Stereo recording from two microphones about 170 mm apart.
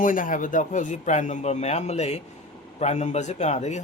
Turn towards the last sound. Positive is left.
turn(degrees=40)  # may be behind; listen again after turning